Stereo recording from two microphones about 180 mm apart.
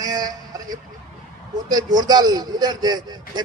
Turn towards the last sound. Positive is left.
turn(degrees=-20)  # may be behind; listen again after turning